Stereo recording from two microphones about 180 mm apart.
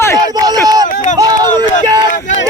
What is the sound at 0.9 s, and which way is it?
Run, 50° left (ahead or behind).